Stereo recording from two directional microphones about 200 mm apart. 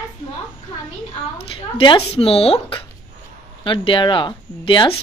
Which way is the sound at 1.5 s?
25° left (ahead or behind).